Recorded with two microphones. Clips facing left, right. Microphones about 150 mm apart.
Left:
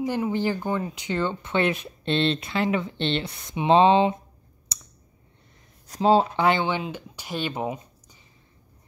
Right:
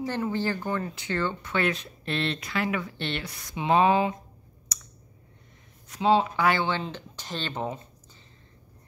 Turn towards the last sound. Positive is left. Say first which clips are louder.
# left 3 dB
turn(degrees=10)  # may be behind; listen again after turning